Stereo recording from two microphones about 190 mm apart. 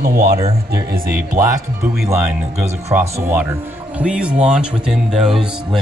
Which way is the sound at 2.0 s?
15° right (ahead or behind).